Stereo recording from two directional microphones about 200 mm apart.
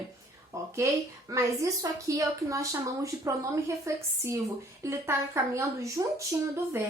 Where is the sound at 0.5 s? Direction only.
15° right (ahead or behind).